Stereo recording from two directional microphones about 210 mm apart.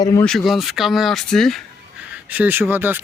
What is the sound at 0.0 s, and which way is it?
Speech, 15° left (ahead or behind).